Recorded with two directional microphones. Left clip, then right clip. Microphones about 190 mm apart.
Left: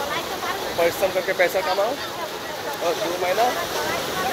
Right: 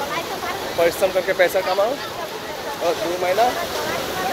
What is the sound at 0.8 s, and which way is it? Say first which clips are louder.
Speech: right 3 dB; 15° right (ahead or behind).